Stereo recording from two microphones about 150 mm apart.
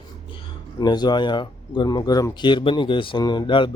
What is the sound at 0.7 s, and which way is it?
A man's voice, 30° left (ahead or behind).